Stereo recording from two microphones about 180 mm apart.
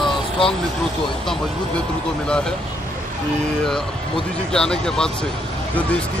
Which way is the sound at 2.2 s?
5° left (ahead or behind).